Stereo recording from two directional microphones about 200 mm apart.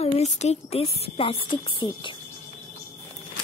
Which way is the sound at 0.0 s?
35° left (ahead or behind).